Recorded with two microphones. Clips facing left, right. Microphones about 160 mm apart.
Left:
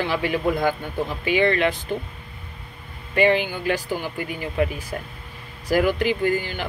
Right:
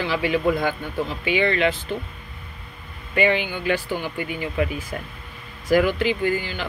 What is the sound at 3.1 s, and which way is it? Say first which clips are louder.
Speech: left 2 dB; 40° left (ahead or behind).